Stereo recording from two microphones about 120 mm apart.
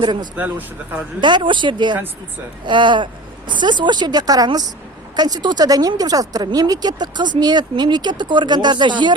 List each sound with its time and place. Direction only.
0.0 s a woman's voice: 35° right (ahead or behind)